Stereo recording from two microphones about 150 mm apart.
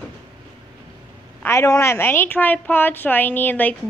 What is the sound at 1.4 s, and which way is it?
A woman's voice, 20° left (ahead or behind).